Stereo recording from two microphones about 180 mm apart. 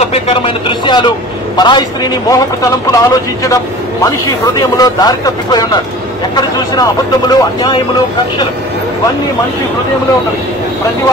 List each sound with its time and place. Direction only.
0.0 s a man's voice: 30° left (ahead or behind)
4.6 s a man's voice: 20° left (ahead or behind)